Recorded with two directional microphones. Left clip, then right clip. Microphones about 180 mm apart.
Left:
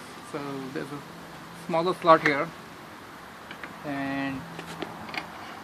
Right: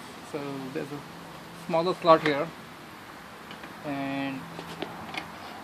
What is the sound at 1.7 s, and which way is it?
Speech, 5° right (ahead or behind).